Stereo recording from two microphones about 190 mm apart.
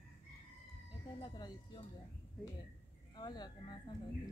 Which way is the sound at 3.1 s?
25° left (ahead or behind).